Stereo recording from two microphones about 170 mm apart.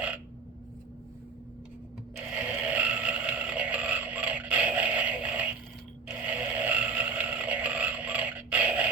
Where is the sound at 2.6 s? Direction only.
10° right (ahead or behind).